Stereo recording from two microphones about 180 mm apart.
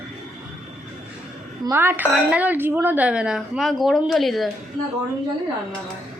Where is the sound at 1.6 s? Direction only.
15° right (ahead or behind).